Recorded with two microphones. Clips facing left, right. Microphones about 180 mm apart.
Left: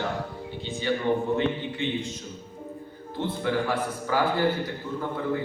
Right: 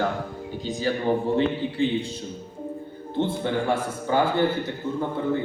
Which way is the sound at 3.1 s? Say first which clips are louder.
Right 2 dB; 25° right (ahead or behind).